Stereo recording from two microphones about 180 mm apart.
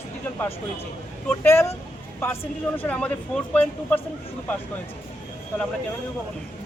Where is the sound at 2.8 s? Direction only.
10° left (ahead or behind).